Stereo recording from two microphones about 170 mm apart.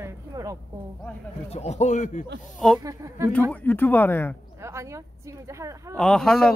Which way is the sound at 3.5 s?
10° left (ahead or behind).